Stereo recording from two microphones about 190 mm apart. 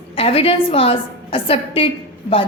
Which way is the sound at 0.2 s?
30° left (ahead or behind).